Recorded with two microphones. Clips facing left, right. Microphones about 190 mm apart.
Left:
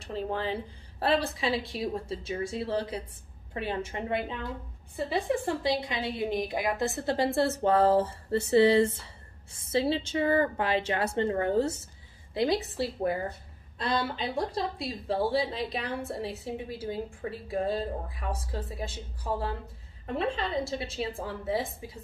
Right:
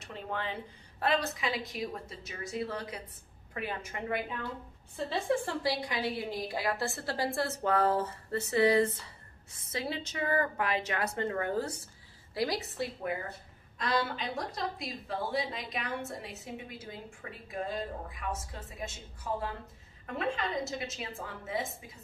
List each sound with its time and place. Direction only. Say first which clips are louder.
0.0 s a woman's voice: left 6 dB; 30° left (ahead or behind)
4.9 s a woman's voice: left 2 dB; 15° left (ahead or behind); by 18.9 s 30° left (ahead or behind)
20.2 s speech: left 3 dB; 30° left (ahead or behind)